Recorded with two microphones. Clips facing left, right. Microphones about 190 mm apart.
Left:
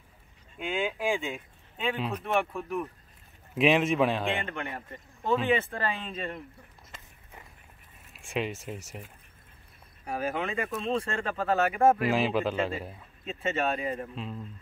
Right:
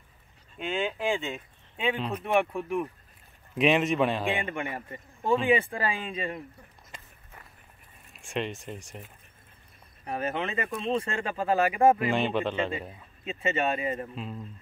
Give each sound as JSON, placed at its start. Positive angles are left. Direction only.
{"t": 0.6, "sound": "speech", "side_deg": 10}
{"t": 1.2, "sound": "speech", "side_deg": 0}
{"t": 3.5, "sound": "speech", "side_deg": 0}
{"t": 4.4, "sound": "speech", "side_deg": -15}
{"t": 8.1, "sound": "speech", "side_deg": 0}
{"t": 10.0, "sound": "speech", "side_deg": 0}